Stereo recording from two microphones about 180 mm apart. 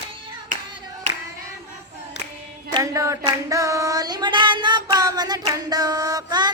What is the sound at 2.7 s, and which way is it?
Female singing, 20° right (ahead or behind).